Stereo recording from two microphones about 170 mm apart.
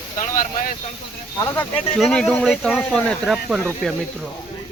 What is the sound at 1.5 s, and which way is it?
Speech, 10° left (ahead or behind).